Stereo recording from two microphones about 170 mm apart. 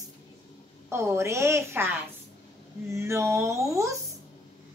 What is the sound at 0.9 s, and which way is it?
A woman's voice, 15° right (ahead or behind).